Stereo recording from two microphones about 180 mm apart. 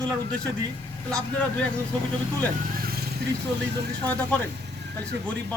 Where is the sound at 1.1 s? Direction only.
5° left (ahead or behind).